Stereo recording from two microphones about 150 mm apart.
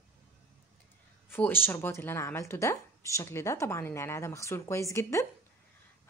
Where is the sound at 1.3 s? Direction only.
15° left (ahead or behind).